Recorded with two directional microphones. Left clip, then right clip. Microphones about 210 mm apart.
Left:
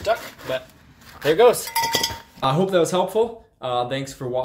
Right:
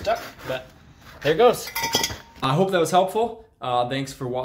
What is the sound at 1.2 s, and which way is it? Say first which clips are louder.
Speech: left 2 dB; 25° left (ahead or behind).